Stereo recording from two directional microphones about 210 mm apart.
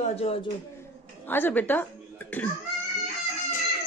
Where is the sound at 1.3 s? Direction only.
10° left (ahead or behind).